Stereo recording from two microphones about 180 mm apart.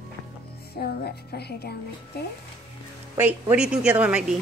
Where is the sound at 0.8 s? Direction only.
60° left (ahead or behind).